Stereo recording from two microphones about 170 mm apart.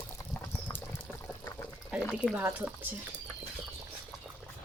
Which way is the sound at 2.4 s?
10° right (ahead or behind).